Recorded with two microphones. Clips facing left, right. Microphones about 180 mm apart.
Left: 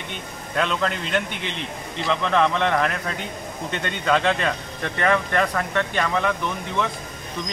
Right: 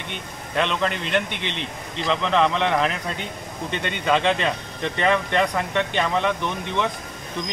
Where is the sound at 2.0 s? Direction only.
Centre (ahead or behind).